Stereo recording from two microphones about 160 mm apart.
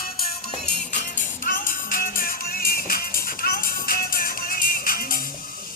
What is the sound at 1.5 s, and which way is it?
Music, 55° left (ahead or behind).